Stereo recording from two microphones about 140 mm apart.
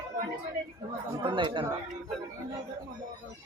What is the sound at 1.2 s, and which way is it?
Chatter, 35° right (ahead or behind).